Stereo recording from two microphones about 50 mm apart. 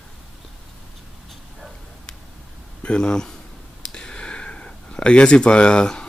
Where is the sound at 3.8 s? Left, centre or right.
Centre.